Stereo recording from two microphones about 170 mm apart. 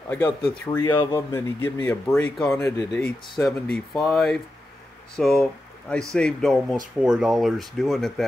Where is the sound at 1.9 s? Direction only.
5° left (ahead or behind).